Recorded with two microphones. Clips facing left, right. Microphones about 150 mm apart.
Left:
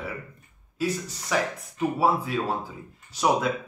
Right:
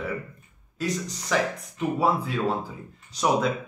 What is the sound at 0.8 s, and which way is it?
Speech, 5° left (ahead or behind).